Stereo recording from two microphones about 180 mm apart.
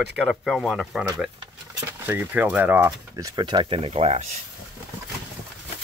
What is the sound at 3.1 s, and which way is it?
Speech, 20° right (ahead or behind).